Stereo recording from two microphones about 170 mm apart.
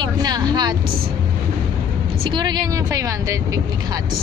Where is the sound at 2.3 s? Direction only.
25° right (ahead or behind).